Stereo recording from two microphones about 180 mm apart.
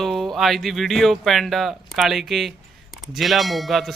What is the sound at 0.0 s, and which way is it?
Speech, centre (ahead or behind).